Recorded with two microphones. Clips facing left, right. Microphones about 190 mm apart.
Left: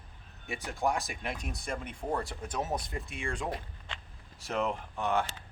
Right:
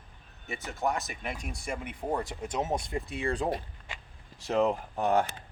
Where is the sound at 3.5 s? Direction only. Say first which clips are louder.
Right 5 dB; 10° right (ahead or behind).